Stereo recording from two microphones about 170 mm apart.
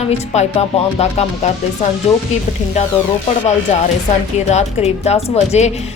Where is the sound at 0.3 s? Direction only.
40° left (ahead or behind).